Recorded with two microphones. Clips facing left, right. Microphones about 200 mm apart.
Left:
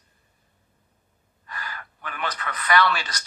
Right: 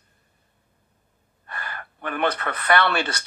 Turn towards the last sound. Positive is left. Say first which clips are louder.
# right 1 dB
turn(degrees=-55)  # may be behind; listen again after turning